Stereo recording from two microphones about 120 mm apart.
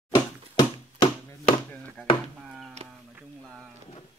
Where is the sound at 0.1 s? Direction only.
35° left (ahead or behind).